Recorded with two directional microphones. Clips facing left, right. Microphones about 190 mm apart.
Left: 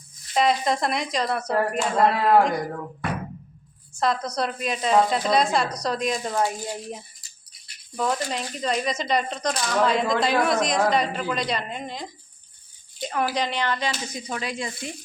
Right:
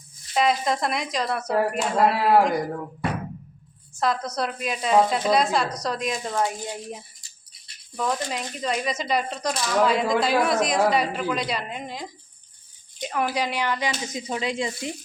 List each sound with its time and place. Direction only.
0.3 s speech: centre (ahead or behind)
4.0 s speech: centre (ahead or behind); by 14.9 s 20° right (ahead or behind)